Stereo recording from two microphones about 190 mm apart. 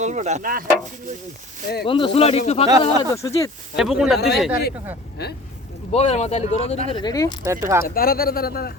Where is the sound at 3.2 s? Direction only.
15° left (ahead or behind).